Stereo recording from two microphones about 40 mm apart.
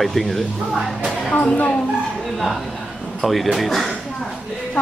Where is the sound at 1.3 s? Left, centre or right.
Left.